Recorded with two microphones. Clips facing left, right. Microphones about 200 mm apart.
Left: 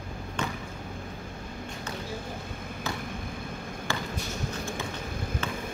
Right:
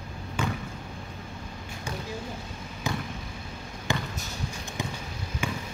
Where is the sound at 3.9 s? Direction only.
15° right (ahead or behind).